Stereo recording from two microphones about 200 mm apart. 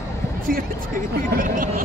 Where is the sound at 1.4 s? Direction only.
45° right (ahead or behind).